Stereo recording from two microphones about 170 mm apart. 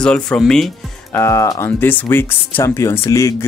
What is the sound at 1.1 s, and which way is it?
Speech, 15° left (ahead or behind).